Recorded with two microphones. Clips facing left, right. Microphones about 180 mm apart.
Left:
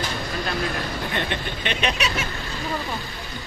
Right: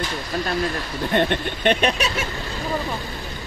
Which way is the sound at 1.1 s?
50° right (ahead or behind).